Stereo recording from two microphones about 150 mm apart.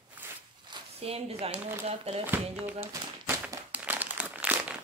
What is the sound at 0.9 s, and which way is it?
Speech, 45° right (ahead or behind).